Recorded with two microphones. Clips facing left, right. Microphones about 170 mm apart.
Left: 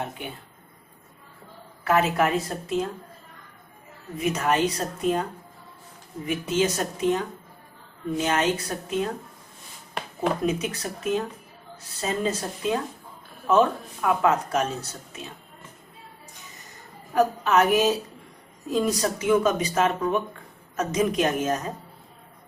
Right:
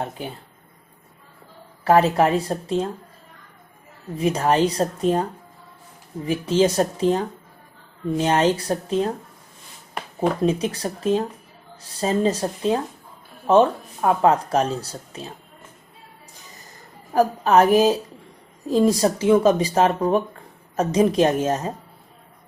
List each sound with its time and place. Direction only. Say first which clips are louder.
0.2 s speech: right 4 dB; 35° right (ahead or behind)
1.8 s speech: right 5 dB; 35° right (ahead or behind)
4.2 s speech: right 4 dB; 35° right (ahead or behind)
6.2 s speech: right 5 dB; 35° right (ahead or behind)
10.2 s speech: right 4 dB; 30° right (ahead or behind)
17.2 s speech: right 4 dB; 35° right (ahead or behind)